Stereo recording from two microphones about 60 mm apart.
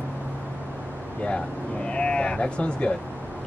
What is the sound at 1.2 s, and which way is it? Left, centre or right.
Speech, centre.